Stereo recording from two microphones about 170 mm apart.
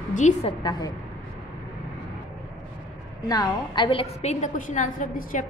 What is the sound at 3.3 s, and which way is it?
A woman's voice, 25° left (ahead or behind).